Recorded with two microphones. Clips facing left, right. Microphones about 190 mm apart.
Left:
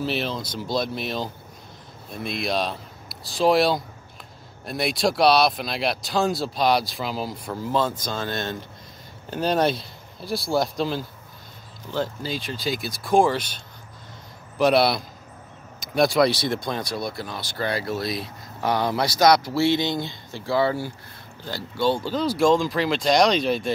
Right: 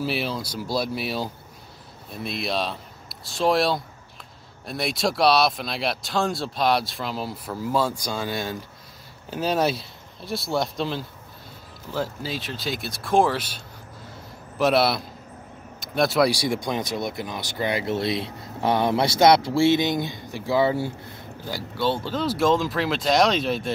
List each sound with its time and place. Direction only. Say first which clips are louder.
0.0 s speech: even; 10° right (ahead or behind)
14.6 s speech: left 1 dB; centre (ahead or behind); by 20.9 s 20° right (ahead or behind)
21.5 s speech: left 2 dB; 5° right (ahead or behind)